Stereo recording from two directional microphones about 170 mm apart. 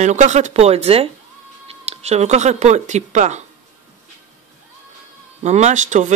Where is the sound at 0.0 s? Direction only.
45° right (ahead or behind).